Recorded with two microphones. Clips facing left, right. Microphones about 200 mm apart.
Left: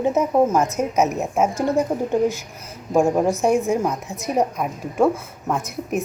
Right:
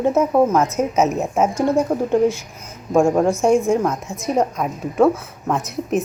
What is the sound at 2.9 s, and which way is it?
A woman's voice, 5° left (ahead or behind).